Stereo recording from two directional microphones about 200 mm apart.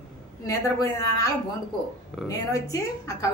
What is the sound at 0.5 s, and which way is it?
A woman's voice, 15° left (ahead or behind).